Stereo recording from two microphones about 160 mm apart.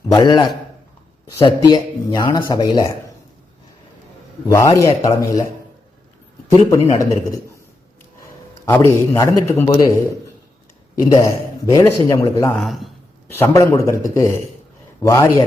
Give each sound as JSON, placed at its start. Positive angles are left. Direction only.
{"t": 0.1, "sound": "a man's voice", "side_deg": 25}
{"t": 4.4, "sound": "a man's voice", "side_deg": 20}
{"t": 6.7, "sound": "a man's voice", "side_deg": 20}
{"t": 8.6, "sound": "a man's voice", "side_deg": 15}
{"t": 11.1, "sound": "a man's voice", "side_deg": 20}
{"t": 12.5, "sound": "a man's voice", "side_deg": 0}
{"t": 13.3, "sound": "a man's voice", "side_deg": 15}